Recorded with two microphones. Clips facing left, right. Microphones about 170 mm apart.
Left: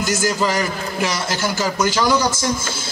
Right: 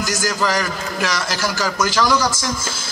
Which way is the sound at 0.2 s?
20° left (ahead or behind).